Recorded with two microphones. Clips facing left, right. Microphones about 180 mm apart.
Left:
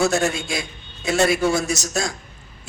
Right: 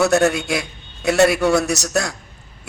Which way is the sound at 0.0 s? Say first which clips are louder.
Right 4 dB; 65° right (ahead or behind).